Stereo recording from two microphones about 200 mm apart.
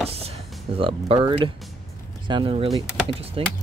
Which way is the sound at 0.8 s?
30° right (ahead or behind).